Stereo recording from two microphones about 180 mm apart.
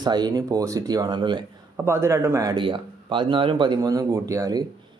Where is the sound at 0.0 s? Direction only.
25° right (ahead or behind).